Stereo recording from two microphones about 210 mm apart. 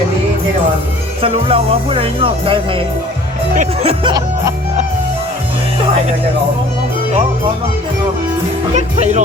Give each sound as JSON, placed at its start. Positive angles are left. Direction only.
{"t": 1.2, "sound": "music", "side_deg": -25}
{"t": 3.5, "sound": "speech", "side_deg": -35}
{"t": 4.0, "sound": "music", "side_deg": -20}
{"t": 8.7, "sound": "speech", "side_deg": -35}